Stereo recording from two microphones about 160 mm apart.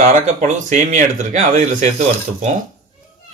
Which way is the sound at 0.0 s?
50° right (ahead or behind).